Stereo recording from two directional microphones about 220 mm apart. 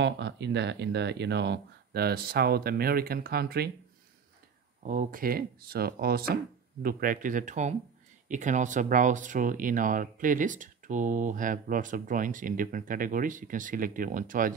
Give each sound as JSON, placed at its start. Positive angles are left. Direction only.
{"t": 0.0, "sound": "speech", "side_deg": -50}
{"t": 4.8, "sound": "speech", "side_deg": -40}